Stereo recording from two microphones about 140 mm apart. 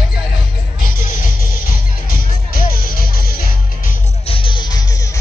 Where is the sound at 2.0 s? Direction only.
90° left.